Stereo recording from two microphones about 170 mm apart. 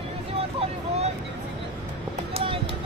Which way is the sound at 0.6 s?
40° right (ahead or behind).